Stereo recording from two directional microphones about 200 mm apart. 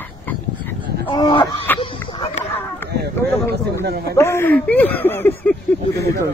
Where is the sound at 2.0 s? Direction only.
25° left (ahead or behind).